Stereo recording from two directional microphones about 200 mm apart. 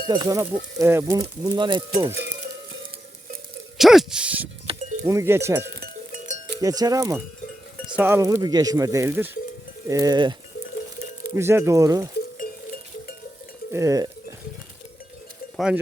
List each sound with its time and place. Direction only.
0.1 s speech: 20° right (ahead or behind)
2.1 s music: 55° right (ahead or behind)
3.8 s speech: centre (ahead or behind)
4.7 s music: 30° right (ahead or behind)
5.0 s speech: 15° right (ahead or behind)
5.6 s sheep: 50° right (ahead or behind)
6.6 s speech: 20° right (ahead or behind)
9.8 s cowbell: 15° right (ahead or behind)
11.3 s speech: 15° right (ahead or behind)
12.4 s sheep: 50° left (ahead or behind)
13.7 s cowbell: 15° right (ahead or behind)
15.5 s speech: 5° right (ahead or behind)